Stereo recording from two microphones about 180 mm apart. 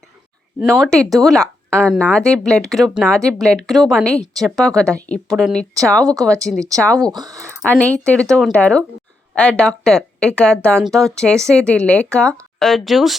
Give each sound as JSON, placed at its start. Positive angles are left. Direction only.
{"t": 0.6, "sound": "a woman's voice", "side_deg": 0}
{"t": 7.0, "sound": "speech", "side_deg": -20}
{"t": 7.6, "sound": "a woman's voice", "side_deg": 5}